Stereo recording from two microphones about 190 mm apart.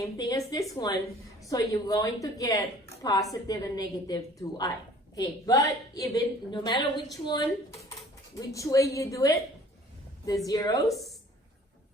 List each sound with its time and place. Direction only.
0.0 s a woman's voice: 20° left (ahead or behind)
10.8 s a woman's voice: centre (ahead or behind)